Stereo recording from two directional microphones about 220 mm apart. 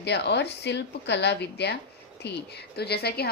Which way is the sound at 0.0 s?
50° left (ahead or behind).